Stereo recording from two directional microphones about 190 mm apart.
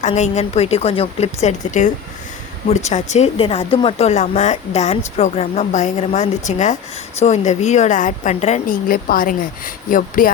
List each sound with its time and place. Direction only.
0.0 s speech: 40° left (ahead or behind)